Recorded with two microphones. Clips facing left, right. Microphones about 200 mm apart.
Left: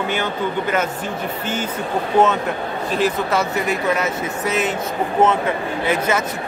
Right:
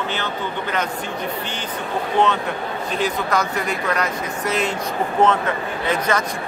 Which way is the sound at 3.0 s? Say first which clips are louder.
Left 2 dB; 5° left (ahead or behind).